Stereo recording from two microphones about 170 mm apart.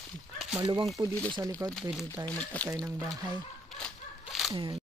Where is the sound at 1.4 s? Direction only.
20° right (ahead or behind).